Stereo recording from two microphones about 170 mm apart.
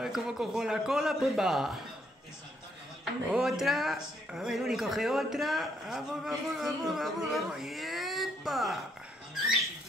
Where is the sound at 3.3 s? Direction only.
Centre (ahead or behind).